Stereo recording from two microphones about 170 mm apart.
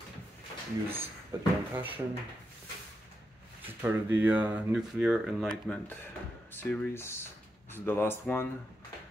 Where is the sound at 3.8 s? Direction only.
10° right (ahead or behind); by 8.5 s 15° left (ahead or behind).